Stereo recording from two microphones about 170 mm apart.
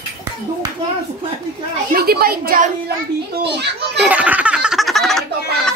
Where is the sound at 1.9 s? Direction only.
65° right (ahead or behind).